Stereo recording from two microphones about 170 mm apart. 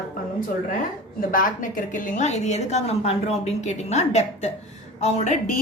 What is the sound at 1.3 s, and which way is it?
A woman's voice, 55° left (ahead or behind).